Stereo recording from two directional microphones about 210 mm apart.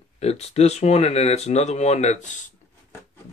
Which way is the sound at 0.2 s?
30° left (ahead or behind).